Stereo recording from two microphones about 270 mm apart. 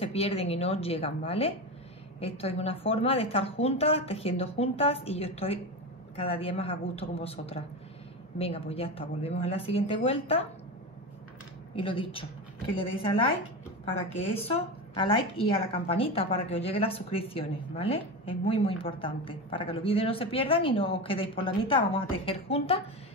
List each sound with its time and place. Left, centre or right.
0.0 s speech: left
11.7 s a woman's voice: centre